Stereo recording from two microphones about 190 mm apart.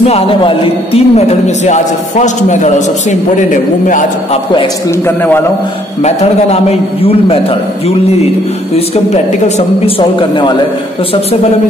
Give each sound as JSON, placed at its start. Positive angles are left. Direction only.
{"t": 0.0, "sound": "speech", "side_deg": 30}
{"t": 5.0, "sound": "a man's voice", "side_deg": 10}
{"t": 6.0, "sound": "speech", "side_deg": 30}
{"t": 8.7, "sound": "speech", "side_deg": 35}